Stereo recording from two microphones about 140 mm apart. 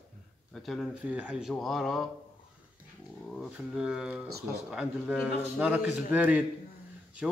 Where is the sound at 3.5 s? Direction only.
5° right (ahead or behind).